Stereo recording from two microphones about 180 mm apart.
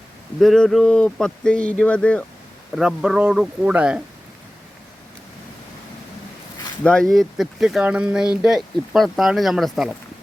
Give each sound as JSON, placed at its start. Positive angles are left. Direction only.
{"t": 0.3, "sound": "speech", "side_deg": 0}
{"t": 6.8, "sound": "speech", "side_deg": 5}